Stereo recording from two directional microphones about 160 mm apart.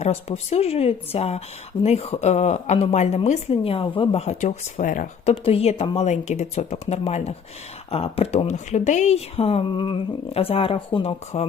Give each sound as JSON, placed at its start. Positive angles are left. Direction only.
{"t": 0.0, "sound": "speech", "side_deg": 40}
{"t": 5.3, "sound": "speech", "side_deg": 40}